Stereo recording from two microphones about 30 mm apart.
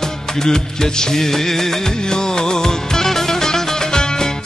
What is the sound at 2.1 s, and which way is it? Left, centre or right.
Music, left.